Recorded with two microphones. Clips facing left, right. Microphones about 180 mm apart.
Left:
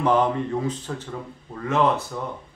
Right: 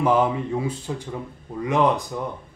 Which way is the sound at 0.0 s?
10° right (ahead or behind).